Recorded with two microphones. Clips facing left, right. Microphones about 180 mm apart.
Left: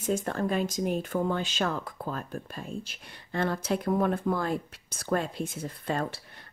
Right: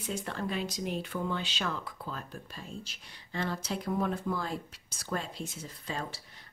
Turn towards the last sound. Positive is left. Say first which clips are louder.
# left 7 dB
turn(degrees=55)  # may be behind; listen again after turning